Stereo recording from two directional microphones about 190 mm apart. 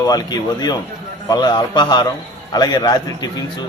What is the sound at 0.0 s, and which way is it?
A man's voice, 20° left (ahead or behind).